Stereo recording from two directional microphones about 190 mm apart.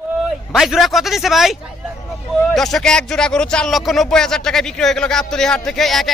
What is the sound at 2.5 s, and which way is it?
Speech, centre (ahead or behind).